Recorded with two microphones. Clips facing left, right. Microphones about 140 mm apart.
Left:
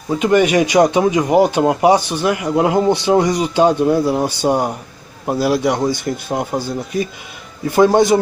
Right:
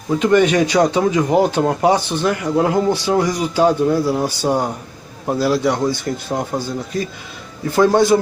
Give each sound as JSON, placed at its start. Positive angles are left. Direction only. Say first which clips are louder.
{"t": 0.1, "sound": "speech", "louder": "even", "side_deg": 10}